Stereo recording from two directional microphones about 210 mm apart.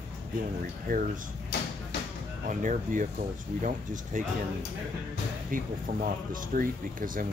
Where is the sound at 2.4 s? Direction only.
40° right (ahead or behind).